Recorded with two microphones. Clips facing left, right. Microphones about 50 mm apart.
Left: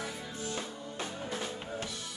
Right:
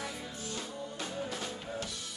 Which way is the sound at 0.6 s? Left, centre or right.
Left.